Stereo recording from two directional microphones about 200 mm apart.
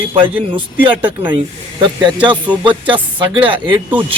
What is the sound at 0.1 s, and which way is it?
A man's voice, 25° right (ahead or behind).